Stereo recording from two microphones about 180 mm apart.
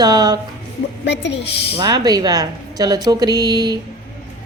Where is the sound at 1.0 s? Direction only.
75° left (ahead or behind).